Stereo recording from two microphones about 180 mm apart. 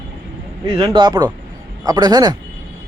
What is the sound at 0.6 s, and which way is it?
Speech, 20° right (ahead or behind).